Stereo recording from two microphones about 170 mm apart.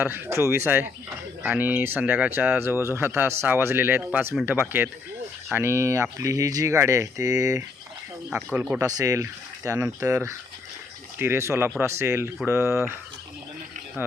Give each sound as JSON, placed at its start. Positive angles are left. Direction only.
{"t": 0.0, "sound": "speech", "side_deg": -15}
{"t": 8.5, "sound": "speech", "side_deg": -10}
{"t": 8.9, "sound": "speech", "side_deg": -20}